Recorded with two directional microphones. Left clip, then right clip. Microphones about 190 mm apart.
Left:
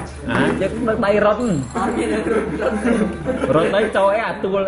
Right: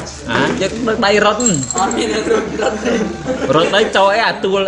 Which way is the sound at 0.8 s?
10° right (ahead or behind).